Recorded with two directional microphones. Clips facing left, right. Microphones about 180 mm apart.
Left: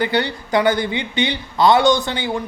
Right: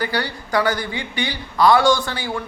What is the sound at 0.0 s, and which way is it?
Speech, 20° left (ahead or behind).